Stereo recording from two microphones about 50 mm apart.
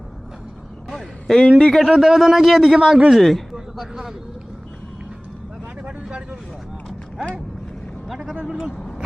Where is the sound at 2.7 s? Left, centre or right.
Centre.